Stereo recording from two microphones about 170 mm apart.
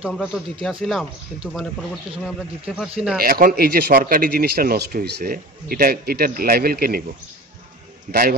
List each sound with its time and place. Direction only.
0.0 s speech: 5° right (ahead or behind)
3.2 s speech: 60° right (ahead or behind)
8.1 s speech: 60° right (ahead or behind)